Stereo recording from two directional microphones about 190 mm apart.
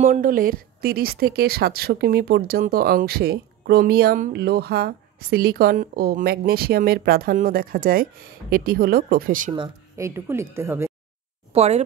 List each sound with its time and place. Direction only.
0.0 s speech: 45° right (ahead or behind)
9.5 s speech: 20° right (ahead or behind)
11.5 s speech: 35° right (ahead or behind)